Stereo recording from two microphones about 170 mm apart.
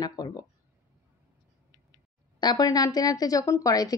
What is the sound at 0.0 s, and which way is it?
Speech, 25° left (ahead or behind).